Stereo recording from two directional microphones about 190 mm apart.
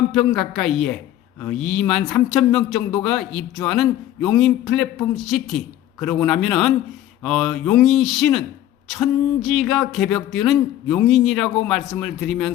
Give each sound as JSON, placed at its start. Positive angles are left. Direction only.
{"t": 0.1, "sound": "speech", "side_deg": 0}